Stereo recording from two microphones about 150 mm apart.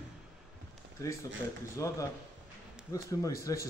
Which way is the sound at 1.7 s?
20° left (ahead or behind).